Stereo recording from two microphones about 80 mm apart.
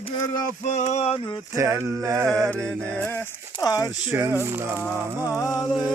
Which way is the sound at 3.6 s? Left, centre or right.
Left.